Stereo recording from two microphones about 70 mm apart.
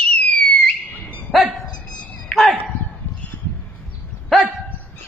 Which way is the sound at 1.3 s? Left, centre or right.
Centre.